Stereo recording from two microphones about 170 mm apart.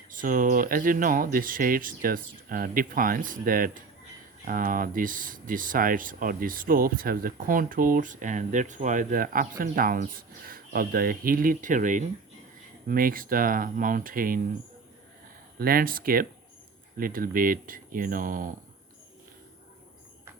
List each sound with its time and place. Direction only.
0.1 s speech: 55° right (ahead or behind)
15.5 s speech: 60° right (ahead or behind)